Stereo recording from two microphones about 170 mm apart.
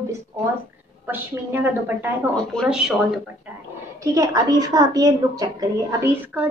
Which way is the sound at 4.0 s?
20° right (ahead or behind).